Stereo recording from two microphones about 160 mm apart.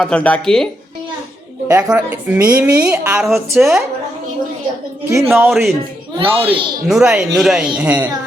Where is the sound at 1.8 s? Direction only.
5° right (ahead or behind).